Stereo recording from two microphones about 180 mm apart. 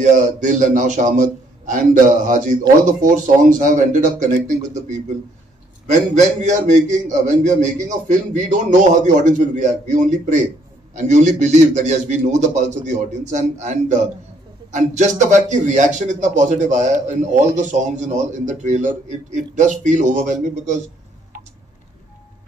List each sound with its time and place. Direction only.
0.0 s a man's voice: 45° right (ahead or behind)